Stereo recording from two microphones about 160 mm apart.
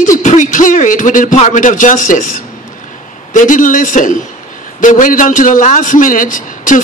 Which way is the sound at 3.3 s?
55° left (ahead or behind).